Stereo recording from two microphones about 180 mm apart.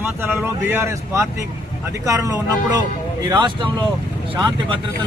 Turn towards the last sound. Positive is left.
turn(degrees=-30)  # may be behind; listen again after turning